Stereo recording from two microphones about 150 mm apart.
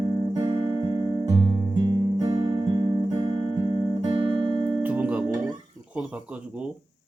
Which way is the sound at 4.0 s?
35° right (ahead or behind).